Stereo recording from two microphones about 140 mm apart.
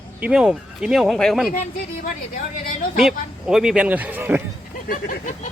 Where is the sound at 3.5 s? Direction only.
5° right (ahead or behind).